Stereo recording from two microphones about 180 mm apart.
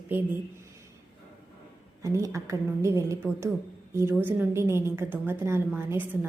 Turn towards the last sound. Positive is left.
turn(degrees=-10)  # may be behind; listen again after turning